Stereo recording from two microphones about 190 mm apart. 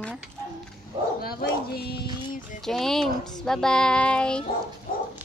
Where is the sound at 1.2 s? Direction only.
55° left (ahead or behind).